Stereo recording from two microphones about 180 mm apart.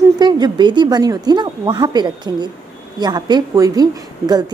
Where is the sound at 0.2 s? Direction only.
25° right (ahead or behind).